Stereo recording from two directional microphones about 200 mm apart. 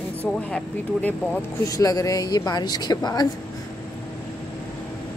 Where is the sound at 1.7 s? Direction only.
15° left (ahead or behind).